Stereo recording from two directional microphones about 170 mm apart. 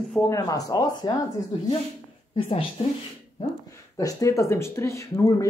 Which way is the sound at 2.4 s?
30° left (ahead or behind).